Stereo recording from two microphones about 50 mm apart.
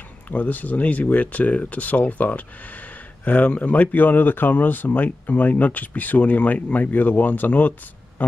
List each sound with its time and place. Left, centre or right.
0.3 s speech: left